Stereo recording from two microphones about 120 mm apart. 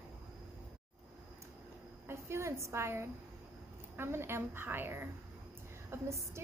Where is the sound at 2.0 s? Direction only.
20° right (ahead or behind).